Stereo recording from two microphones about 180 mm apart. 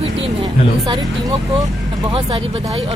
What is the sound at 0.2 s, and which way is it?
Speech, 30° right (ahead or behind).